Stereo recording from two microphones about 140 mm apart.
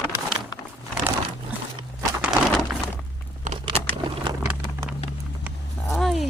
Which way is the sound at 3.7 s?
45° right (ahead or behind).